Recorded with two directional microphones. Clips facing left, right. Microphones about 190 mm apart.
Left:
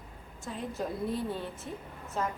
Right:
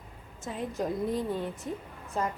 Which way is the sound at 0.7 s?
15° right (ahead or behind).